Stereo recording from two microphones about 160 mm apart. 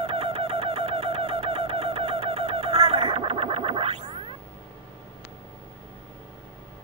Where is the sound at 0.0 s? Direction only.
35° right (ahead or behind).